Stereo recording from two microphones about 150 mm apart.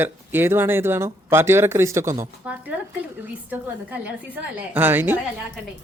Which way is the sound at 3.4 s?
10° right (ahead or behind).